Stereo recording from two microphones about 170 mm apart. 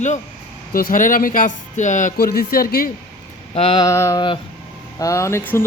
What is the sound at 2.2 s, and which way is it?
Speech, 60° left (ahead or behind).